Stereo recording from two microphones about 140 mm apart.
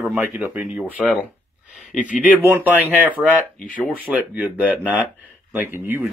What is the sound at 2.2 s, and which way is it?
Speech, 15° right (ahead or behind).